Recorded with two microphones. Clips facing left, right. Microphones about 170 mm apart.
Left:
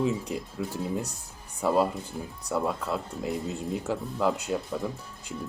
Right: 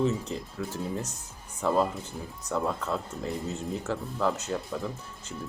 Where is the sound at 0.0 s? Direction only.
10° left (ahead or behind).